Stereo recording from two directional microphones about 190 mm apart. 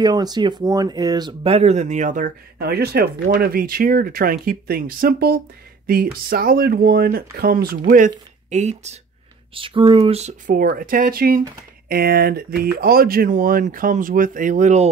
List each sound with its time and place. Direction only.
0.0 s speech: 20° right (ahead or behind); by 7.8 s 50° right (ahead or behind)
7.9 s speech: 40° right (ahead or behind)